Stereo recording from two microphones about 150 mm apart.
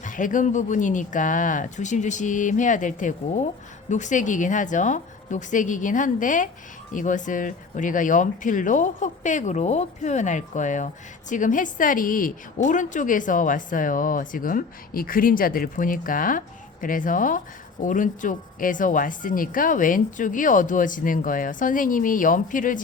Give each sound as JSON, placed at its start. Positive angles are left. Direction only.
{"t": 0.0, "sound": "speech", "side_deg": 60}